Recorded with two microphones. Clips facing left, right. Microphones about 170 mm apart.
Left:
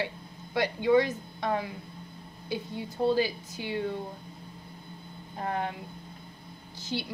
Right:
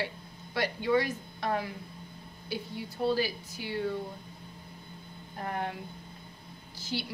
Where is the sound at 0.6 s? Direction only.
20° left (ahead or behind).